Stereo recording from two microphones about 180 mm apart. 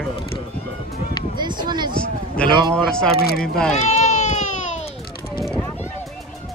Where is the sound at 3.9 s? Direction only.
40° left (ahead or behind).